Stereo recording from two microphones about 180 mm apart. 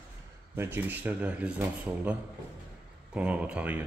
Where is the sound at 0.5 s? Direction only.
10° right (ahead or behind).